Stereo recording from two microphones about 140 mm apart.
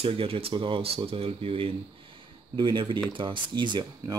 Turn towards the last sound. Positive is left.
turn(degrees=-35)  # may be behind; listen again after turning